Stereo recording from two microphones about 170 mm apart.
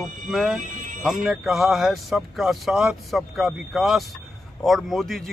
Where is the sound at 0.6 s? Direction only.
50° right (ahead or behind).